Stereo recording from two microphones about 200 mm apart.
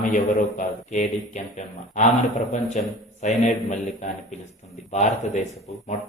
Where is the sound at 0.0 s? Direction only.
40° left (ahead or behind).